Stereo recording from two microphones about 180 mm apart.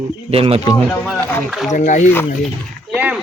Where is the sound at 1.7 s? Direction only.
40° left (ahead or behind).